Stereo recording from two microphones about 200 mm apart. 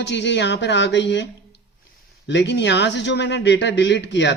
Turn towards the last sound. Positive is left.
turn(degrees=60)  # may be behind; listen again after turning